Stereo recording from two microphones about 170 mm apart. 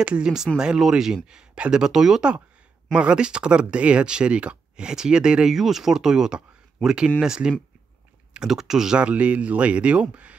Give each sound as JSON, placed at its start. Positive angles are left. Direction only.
{"t": 0.0, "sound": "speech", "side_deg": -5}